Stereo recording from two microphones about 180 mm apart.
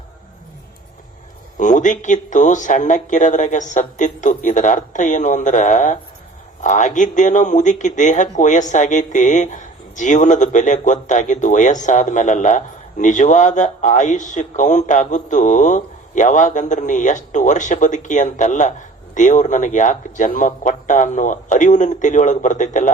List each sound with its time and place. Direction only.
1.5 s a man's voice: 45° left (ahead or behind)